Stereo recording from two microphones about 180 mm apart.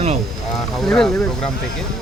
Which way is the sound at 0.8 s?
Centre (ahead or behind).